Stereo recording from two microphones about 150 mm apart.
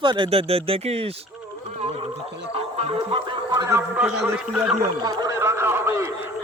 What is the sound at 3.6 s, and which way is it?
A man's voice, 15° right (ahead or behind).